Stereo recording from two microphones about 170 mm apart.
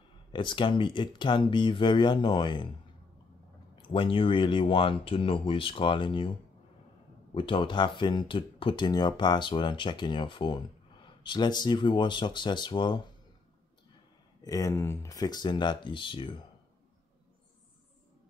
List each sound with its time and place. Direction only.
0.3 s speech: 30° left (ahead or behind)
3.7 s speech: 30° left (ahead or behind)
7.3 s speech: 30° left (ahead or behind)
14.4 s speech: 20° left (ahead or behind)